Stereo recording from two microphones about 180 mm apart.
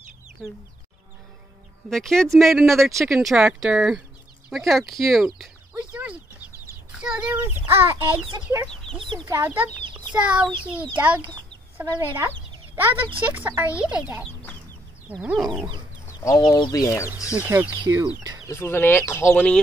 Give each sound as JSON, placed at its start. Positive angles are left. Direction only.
{"t": 1.9, "sound": "a child's voice", "side_deg": 0}
{"t": 8.6, "sound": "speech", "side_deg": 5}
{"t": 9.0, "sound": "speech", "side_deg": -30}
{"t": 9.3, "sound": "a child's voice", "side_deg": -10}
{"t": 12.9, "sound": "speech", "side_deg": -30}
{"t": 13.2, "sound": "a child's voice", "side_deg": -10}
{"t": 16.1, "sound": "speech", "side_deg": 20}
{"t": 17.4, "sound": "a child's voice", "side_deg": -10}
{"t": 18.5, "sound": "speech", "side_deg": 15}